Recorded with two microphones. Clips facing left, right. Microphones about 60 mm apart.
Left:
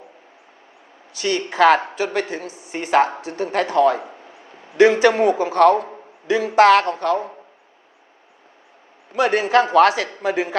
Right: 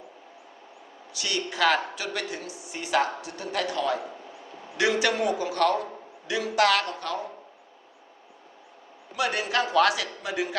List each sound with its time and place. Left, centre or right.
1.1 s a woman's voice: left
9.1 s a woman's voice: left